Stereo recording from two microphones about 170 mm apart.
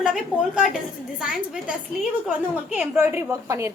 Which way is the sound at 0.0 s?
5° right (ahead or behind).